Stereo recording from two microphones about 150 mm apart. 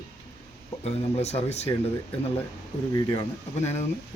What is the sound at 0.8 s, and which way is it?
Speech, 45° left (ahead or behind).